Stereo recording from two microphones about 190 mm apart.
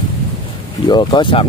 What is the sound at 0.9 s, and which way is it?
Speech, 25° left (ahead or behind).